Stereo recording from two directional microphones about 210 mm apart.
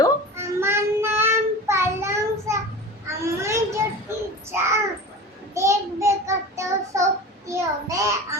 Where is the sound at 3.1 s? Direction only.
15° right (ahead or behind).